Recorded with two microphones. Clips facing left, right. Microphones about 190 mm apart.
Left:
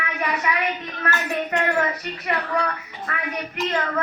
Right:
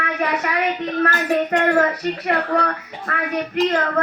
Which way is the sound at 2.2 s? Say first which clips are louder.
Right 3 dB; 50° right (ahead or behind).